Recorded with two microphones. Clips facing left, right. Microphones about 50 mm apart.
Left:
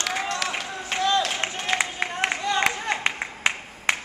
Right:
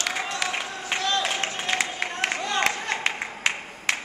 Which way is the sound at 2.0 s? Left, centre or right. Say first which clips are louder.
Left 2 dB; centre.